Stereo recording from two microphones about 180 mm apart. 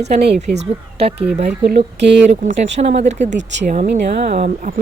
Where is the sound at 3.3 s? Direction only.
80° right.